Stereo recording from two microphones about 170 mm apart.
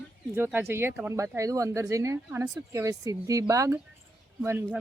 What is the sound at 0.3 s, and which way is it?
Speech, 10° right (ahead or behind).